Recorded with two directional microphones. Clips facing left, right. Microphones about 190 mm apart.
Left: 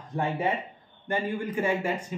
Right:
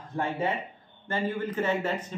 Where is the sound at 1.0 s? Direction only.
15° left (ahead or behind).